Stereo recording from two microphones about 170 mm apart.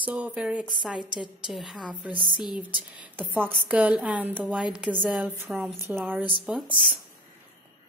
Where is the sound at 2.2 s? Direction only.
25° left (ahead or behind).